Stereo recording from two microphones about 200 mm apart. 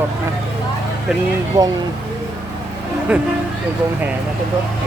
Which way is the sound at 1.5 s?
15° right (ahead or behind).